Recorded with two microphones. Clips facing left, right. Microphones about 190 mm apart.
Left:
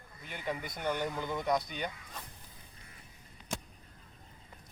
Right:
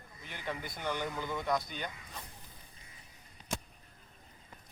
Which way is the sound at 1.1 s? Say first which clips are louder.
Left 2 dB; 20° left (ahead or behind).